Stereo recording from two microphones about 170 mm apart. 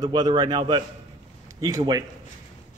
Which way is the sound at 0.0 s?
25° right (ahead or behind).